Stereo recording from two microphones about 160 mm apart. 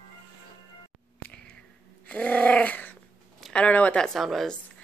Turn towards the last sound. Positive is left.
turn(degrees=0)  # may be behind; listen again after turning